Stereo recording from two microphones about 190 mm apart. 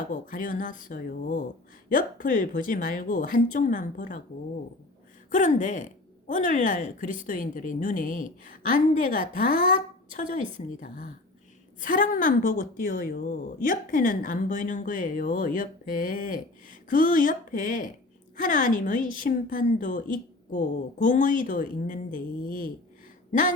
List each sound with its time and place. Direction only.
0.0 s a woman's voice: 45° left (ahead or behind)
5.3 s a woman's voice: 40° left (ahead or behind)